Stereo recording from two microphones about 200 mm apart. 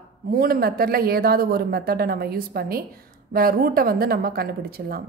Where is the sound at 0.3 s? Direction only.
50° right (ahead or behind).